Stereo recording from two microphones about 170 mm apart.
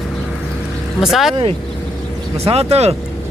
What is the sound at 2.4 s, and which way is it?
Speech, 35° right (ahead or behind).